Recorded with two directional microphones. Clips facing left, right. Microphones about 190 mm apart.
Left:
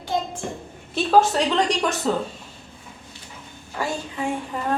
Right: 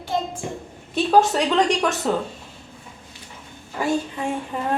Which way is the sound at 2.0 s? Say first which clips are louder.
Even; 5° right (ahead or behind).